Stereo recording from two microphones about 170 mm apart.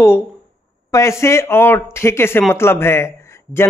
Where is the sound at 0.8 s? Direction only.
15° left (ahead or behind).